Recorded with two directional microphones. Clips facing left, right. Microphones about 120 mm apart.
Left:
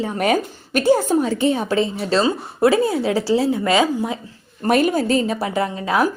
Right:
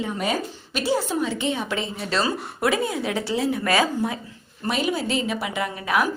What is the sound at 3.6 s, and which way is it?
Speech, 20° left (ahead or behind).